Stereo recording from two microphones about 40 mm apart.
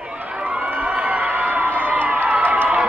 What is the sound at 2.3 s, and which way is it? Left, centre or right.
Run, right.